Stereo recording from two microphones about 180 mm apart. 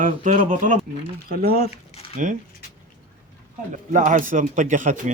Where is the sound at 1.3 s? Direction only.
55° right (ahead or behind).